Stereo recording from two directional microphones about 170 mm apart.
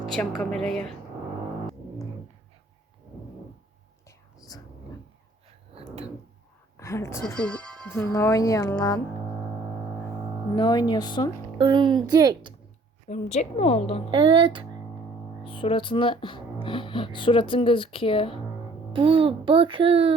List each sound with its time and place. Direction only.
0.1 s speech: 5° left (ahead or behind)
4.4 s whispering: 20° left (ahead or behind)
5.7 s drawer open or close: 35° right (ahead or behind)
6.7 s speech: 15° left (ahead or behind)
7.3 s speech: 5° left (ahead or behind)
10.5 s speech: 25° left (ahead or behind)
11.5 s speech: 25° right (ahead or behind)
13.1 s speech: 40° left (ahead or behind)
14.1 s speech: 30° right (ahead or behind)
15.4 s speech: 30° left (ahead or behind)
18.9 s a child's voice: 35° right (ahead or behind)